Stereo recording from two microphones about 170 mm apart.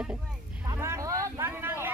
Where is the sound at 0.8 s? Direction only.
15° right (ahead or behind).